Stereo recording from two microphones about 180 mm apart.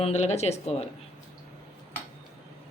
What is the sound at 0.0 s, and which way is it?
Speech, 40° left (ahead or behind).